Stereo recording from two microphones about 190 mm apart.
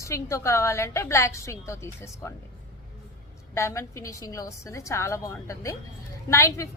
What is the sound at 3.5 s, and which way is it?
A woman's voice, 15° left (ahead or behind).